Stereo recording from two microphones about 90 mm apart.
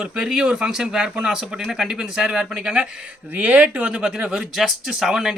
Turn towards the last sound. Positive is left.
turn(degrees=-5)  # may be behind; listen again after turning